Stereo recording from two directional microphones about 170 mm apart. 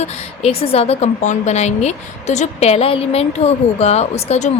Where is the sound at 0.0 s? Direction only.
40° left (ahead or behind).